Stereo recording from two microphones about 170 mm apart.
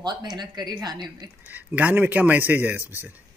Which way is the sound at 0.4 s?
25° right (ahead or behind).